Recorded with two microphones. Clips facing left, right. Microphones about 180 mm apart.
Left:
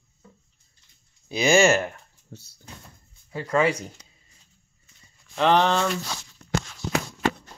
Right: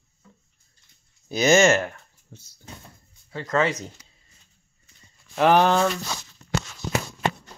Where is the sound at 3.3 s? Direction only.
10° left (ahead or behind).